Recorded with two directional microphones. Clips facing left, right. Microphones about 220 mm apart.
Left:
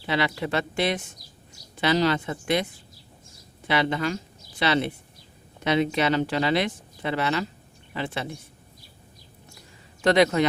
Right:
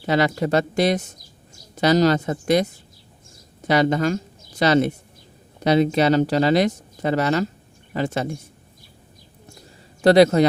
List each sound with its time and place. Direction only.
0.0 s speech: 45° right (ahead or behind)
10.0 s speech: 35° right (ahead or behind)